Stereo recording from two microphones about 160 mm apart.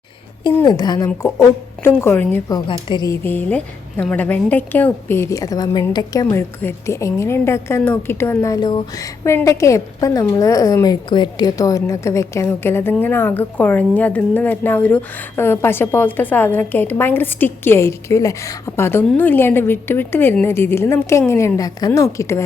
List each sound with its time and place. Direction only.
0.6 s a woman's voice: 25° left (ahead or behind)
1.0 s a woman's voice: 15° left (ahead or behind)
3.2 s a woman's voice: 10° left (ahead or behind)
6.2 s a woman's voice: 15° left (ahead or behind)